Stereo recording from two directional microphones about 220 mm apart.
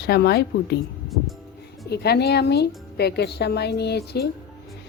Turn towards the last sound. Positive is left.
turn(degrees=50)  # may be behind; listen again after turning